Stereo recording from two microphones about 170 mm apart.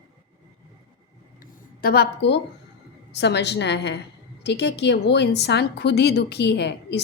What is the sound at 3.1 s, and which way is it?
A woman's voice, 90° left.